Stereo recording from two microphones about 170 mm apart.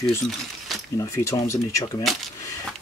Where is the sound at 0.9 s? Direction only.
15° left (ahead or behind).